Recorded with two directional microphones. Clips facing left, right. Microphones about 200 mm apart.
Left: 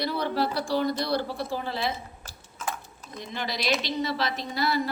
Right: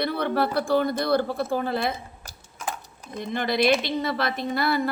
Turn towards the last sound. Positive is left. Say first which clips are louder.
# right 3 dB
turn(degrees=-55)  # may be behind; listen again after turning